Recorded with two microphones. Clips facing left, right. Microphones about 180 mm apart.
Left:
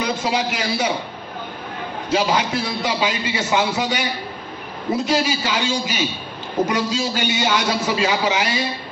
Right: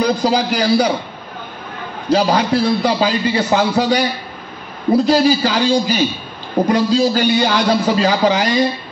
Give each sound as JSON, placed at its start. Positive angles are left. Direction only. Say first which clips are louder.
{"t": 0.0, "sound": "a man's voice", "louder": "right 6 dB", "side_deg": -35}
{"t": 2.0, "sound": "a man's voice", "louder": "right 5 dB", "side_deg": -40}